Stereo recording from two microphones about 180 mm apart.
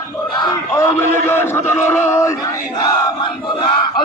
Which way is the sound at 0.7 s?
15° left (ahead or behind).